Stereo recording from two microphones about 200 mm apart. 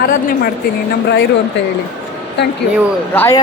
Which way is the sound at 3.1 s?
10° left (ahead or behind).